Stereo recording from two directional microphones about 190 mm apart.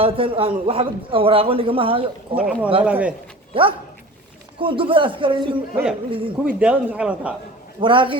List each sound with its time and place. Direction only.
0.0 s a man's voice: 30° right (ahead or behind)
2.3 s speech: 5° right (ahead or behind)
3.5 s a man's voice: 30° right (ahead or behind)
6.4 s speech: 5° right (ahead or behind)
7.8 s a man's voice: 25° right (ahead or behind)